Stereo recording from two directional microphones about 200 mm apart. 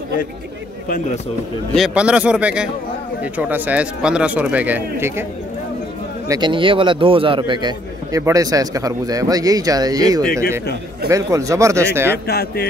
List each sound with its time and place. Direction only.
0.8 s speech: 45° left (ahead or behind)
1.8 s a man's voice: 5° right (ahead or behind)
6.2 s a man's voice: 20° right (ahead or behind)
12.3 s speech: 55° left (ahead or behind)